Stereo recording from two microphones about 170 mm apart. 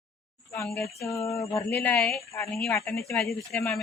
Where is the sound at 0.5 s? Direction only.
15° left (ahead or behind).